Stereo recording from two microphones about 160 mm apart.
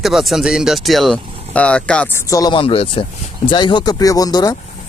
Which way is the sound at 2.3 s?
25° left (ahead or behind).